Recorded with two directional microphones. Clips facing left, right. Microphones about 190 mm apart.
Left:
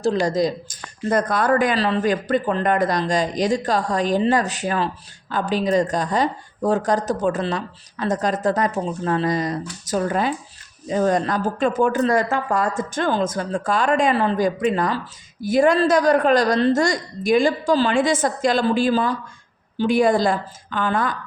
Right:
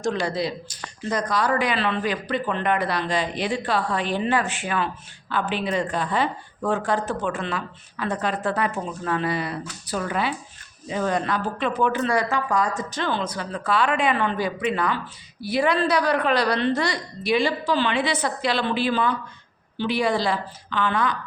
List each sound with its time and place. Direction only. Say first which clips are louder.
0.0 s speech: left 5 dB; 35° left (ahead or behind)